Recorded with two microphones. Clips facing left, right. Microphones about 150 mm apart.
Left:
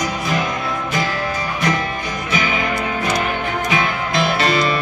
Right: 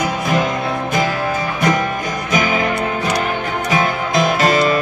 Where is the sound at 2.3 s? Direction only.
45° right (ahead or behind).